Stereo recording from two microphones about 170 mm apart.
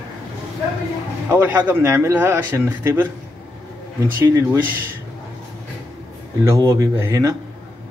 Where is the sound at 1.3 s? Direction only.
10° right (ahead or behind).